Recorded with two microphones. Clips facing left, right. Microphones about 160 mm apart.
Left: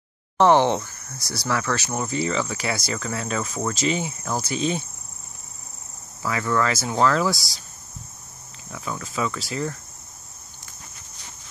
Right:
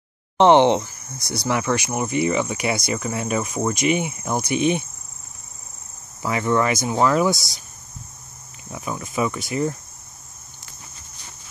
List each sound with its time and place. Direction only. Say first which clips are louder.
0.4 s speech: right 3 dB; 20° right (ahead or behind)
2.9 s cricket: right 4 dB; 20° right (ahead or behind)
6.2 s speech: right 3 dB; 20° right (ahead or behind)
8.7 s speech: right 3 dB; 20° right (ahead or behind)